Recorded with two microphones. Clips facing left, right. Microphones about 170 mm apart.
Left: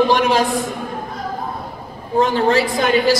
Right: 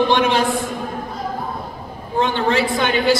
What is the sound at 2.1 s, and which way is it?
Speech, 35° left (ahead or behind).